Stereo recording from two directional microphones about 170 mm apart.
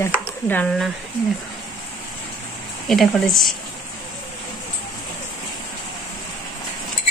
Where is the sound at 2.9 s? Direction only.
Centre (ahead or behind).